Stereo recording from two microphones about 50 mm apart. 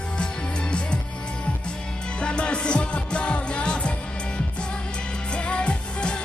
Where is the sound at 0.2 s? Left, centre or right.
Centre.